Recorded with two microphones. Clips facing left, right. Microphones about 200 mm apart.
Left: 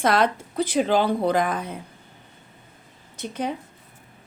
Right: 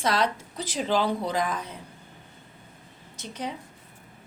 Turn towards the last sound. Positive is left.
turn(degrees=55)  # may be behind; listen again after turning